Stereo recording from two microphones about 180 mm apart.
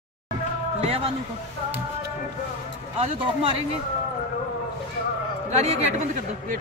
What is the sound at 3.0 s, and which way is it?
Speech, 30° right (ahead or behind).